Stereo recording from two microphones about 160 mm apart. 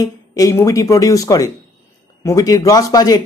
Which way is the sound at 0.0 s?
20° left (ahead or behind).